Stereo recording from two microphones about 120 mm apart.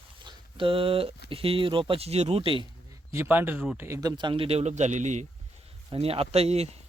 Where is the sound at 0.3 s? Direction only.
45° right (ahead or behind).